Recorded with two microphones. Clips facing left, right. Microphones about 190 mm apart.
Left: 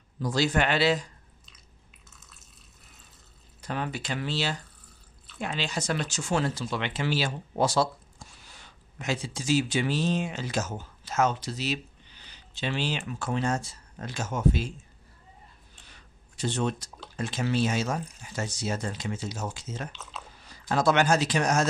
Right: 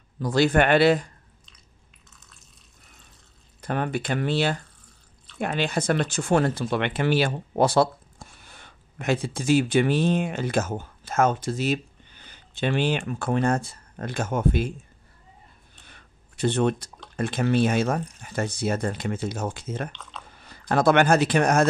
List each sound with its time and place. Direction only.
0.2 s speech: 55° right (ahead or behind)
2.0 s drip: centre (ahead or behind)
3.6 s speech: 55° right (ahead or behind)
15.8 s a sound: 60° right (ahead or behind)
17.2 s speech: 55° right (ahead or behind)
19.9 s drip: 5° left (ahead or behind)
20.3 s speech: 55° right (ahead or behind)